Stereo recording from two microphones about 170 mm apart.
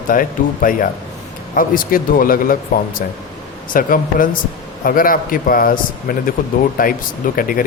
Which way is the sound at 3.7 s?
55° left (ahead or behind).